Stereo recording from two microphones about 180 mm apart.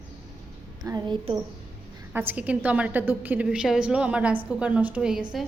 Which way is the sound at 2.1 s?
10° right (ahead or behind).